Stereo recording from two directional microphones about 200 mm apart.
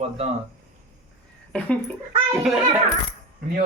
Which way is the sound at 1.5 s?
5° left (ahead or behind).